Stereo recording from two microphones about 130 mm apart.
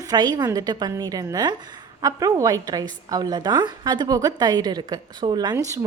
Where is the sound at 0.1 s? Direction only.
30° right (ahead or behind).